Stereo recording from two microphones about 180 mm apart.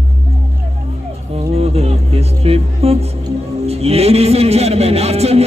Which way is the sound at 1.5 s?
35° right (ahead or behind).